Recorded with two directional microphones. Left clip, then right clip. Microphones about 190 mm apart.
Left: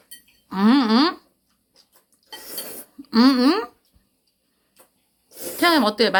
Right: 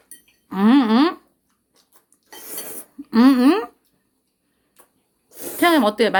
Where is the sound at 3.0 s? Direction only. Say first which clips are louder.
Right 2 dB; 15° right (ahead or behind).